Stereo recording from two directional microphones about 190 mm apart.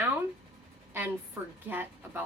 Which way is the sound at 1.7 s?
10° right (ahead or behind).